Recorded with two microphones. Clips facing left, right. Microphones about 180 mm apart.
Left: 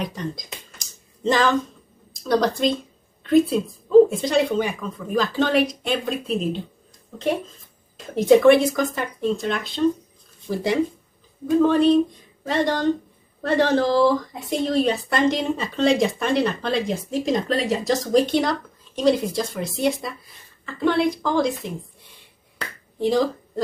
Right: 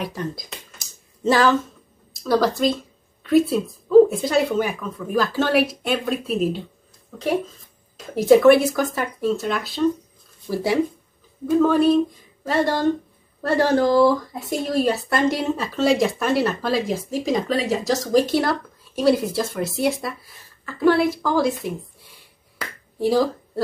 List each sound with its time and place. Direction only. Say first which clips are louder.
0.0 s a sound: right 1 dB; 5° right (ahead or behind)
2.2 s speech: right 1 dB; 5° right (ahead or behind)
22.6 s finger snapping: right 1 dB; 5° right (ahead or behind)